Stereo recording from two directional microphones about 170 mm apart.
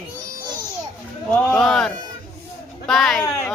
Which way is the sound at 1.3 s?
10° left (ahead or behind).